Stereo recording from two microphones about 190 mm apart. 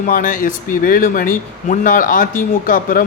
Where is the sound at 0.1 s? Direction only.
45° left (ahead or behind).